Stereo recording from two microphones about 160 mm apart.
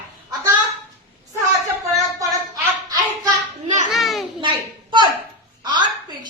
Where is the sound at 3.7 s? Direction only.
50° right (ahead or behind).